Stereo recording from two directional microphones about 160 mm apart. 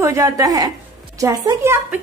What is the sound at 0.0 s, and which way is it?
A woman's voice, 20° right (ahead or behind).